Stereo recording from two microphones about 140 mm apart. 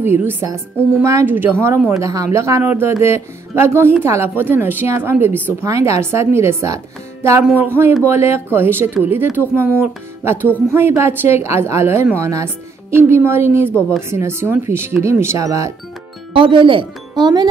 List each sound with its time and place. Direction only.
0.0 s a woman's voice: 15° right (ahead or behind)
16.3 s speech: 35° right (ahead or behind)